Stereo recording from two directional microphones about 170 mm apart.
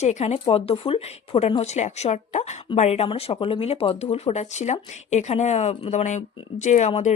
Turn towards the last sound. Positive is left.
turn(degrees=40)  # may be behind; listen again after turning